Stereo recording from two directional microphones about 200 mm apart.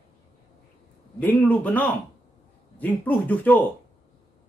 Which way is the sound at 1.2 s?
10° left (ahead or behind).